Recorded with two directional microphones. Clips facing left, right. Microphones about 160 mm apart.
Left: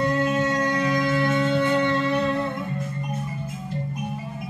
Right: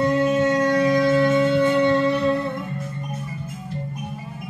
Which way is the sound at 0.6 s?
25° right (ahead or behind).